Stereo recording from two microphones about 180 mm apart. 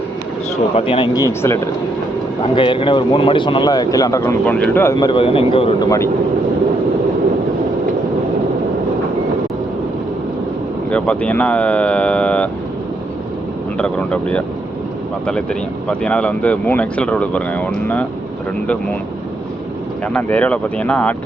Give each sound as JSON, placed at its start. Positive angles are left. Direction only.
{"t": 0.8, "sound": "a man's voice", "side_deg": 30}
{"t": 2.4, "sound": "a man's voice", "side_deg": 30}
{"t": 10.8, "sound": "speech", "side_deg": 5}
{"t": 13.7, "sound": "speech", "side_deg": 5}
{"t": 15.9, "sound": "speech", "side_deg": 5}
{"t": 20.1, "sound": "speech", "side_deg": 10}